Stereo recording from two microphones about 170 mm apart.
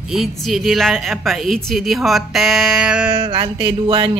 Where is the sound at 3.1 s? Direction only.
25° right (ahead or behind).